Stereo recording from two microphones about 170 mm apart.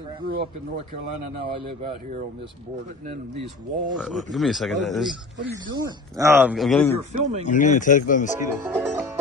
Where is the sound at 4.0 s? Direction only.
Centre (ahead or behind).